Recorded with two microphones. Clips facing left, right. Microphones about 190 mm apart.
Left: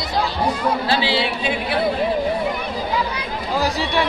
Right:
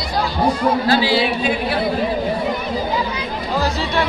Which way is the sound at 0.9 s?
25° left (ahead or behind).